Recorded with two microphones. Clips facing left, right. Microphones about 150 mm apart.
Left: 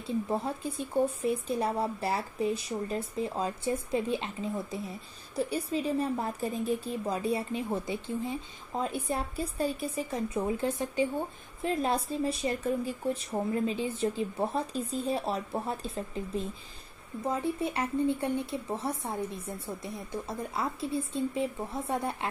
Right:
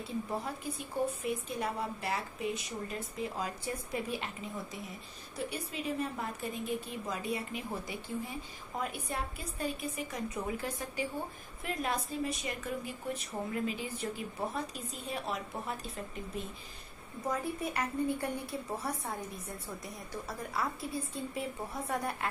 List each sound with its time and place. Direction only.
0.0 s a woman's voice: 25° left (ahead or behind)